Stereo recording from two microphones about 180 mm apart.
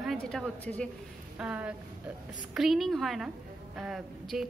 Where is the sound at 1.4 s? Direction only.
5° right (ahead or behind).